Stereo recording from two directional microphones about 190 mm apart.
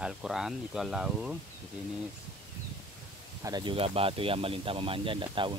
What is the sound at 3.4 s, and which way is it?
Speech, 25° right (ahead or behind).